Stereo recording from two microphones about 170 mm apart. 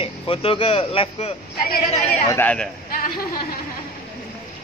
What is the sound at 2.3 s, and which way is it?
Speech, 10° left (ahead or behind).